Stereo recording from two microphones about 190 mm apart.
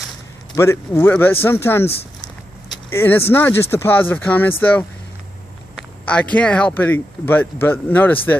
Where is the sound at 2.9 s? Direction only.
10° left (ahead or behind).